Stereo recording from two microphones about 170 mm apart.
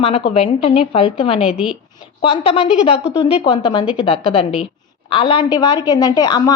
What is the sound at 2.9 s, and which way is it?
Speech, 30° left (ahead or behind).